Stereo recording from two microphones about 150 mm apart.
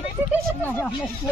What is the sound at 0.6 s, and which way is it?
Speech, 10° left (ahead or behind).